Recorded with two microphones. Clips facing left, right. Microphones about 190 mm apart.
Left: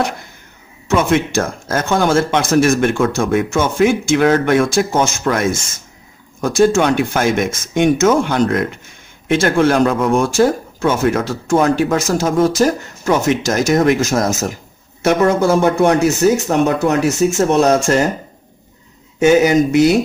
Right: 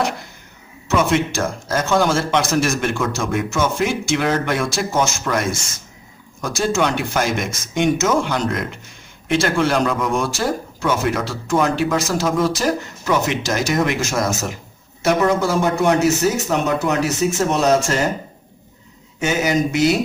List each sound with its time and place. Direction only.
0.9 s speech: 50° left (ahead or behind)
19.2 s speech: 50° left (ahead or behind)